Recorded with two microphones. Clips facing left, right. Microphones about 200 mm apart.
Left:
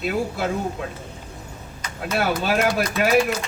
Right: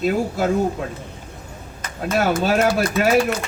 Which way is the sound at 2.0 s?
45° right (ahead or behind).